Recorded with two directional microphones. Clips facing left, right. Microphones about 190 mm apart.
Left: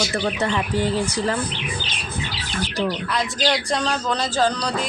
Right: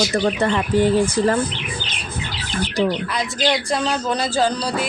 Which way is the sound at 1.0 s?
50° right (ahead or behind).